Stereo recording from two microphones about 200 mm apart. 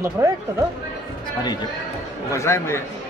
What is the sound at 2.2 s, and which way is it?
Speech, 15° left (ahead or behind).